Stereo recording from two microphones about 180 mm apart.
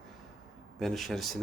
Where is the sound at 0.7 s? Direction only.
Centre (ahead or behind).